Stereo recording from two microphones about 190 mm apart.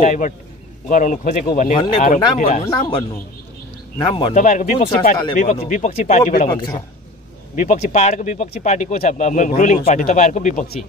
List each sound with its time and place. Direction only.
0.0 s speech: 40° left (ahead or behind)
2.3 s speech: 35° left (ahead or behind)
2.7 s speech: 25° left (ahead or behind)
4.1 s speech: 35° left (ahead or behind)
7.5 s speech: 45° left (ahead or behind)